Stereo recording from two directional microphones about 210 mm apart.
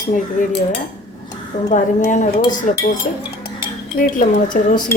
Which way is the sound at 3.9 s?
40° left (ahead or behind).